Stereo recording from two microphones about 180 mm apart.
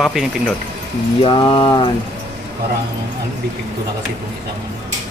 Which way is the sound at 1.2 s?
30° left (ahead or behind).